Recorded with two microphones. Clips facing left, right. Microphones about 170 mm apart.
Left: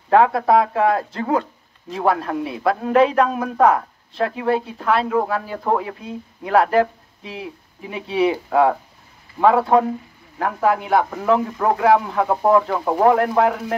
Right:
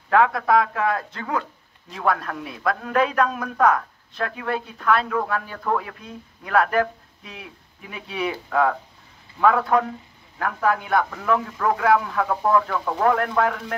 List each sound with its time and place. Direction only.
0.1 s a man's voice: 30° left (ahead or behind)